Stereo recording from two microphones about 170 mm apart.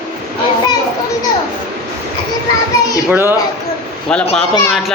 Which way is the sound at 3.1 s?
15° right (ahead or behind).